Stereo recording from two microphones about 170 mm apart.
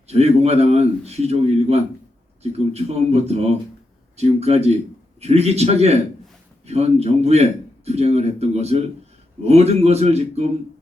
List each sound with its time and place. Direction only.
0.1 s a man's voice: 40° right (ahead or behind)